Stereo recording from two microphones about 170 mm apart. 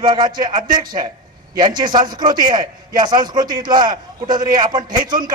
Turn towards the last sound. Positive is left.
turn(degrees=-25)  # may be behind; listen again after turning